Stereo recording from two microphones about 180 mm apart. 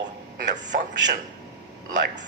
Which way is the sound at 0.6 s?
85° right.